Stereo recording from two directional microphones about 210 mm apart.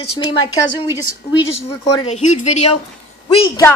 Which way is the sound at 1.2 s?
20° left (ahead or behind).